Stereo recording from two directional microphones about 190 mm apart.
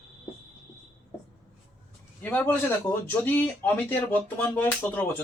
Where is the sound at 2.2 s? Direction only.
10° left (ahead or behind).